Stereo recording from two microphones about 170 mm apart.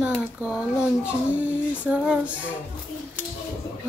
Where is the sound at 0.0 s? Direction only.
5° right (ahead or behind).